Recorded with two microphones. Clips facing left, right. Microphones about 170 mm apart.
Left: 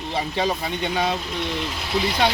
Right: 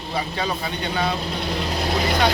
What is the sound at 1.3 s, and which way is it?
Speech, 35° right (ahead or behind).